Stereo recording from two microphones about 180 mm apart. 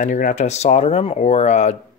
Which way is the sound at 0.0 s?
45° left (ahead or behind).